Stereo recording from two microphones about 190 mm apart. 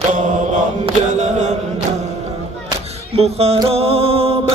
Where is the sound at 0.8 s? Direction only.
40° right (ahead or behind).